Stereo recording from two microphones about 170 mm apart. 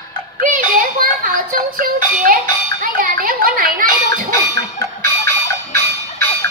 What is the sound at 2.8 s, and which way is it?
Chatter, 55° right (ahead or behind).